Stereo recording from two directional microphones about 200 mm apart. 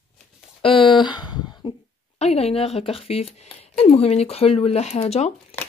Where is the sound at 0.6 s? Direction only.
25° left (ahead or behind).